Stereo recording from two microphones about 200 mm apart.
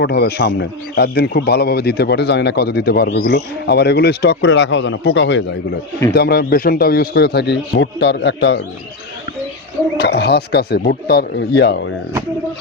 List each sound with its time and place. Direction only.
0.0 s speech: 55° left (ahead or behind)
6.1 s a man's voice: 50° left (ahead or behind)
10.0 s speech: 55° left (ahead or behind)